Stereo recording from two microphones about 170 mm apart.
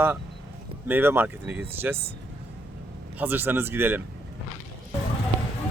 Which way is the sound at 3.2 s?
10° right (ahead or behind).